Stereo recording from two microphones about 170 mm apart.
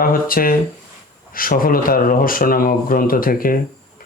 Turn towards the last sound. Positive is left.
turn(degrees=55)  # may be behind; listen again after turning